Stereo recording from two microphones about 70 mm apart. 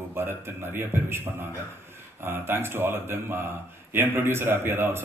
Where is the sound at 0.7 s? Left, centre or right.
Right.